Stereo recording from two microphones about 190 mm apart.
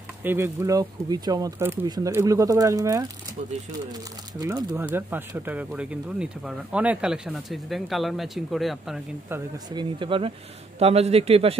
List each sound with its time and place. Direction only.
0.2 s speech: 10° right (ahead or behind)
4.4 s speech: 15° right (ahead or behind)
9.3 s a man's voice: 20° right (ahead or behind)